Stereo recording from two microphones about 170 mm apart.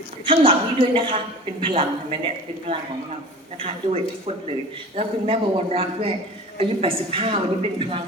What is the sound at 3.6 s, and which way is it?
Speech, 35° right (ahead or behind).